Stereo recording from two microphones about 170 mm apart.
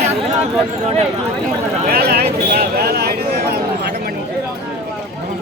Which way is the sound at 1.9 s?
65° right (ahead or behind).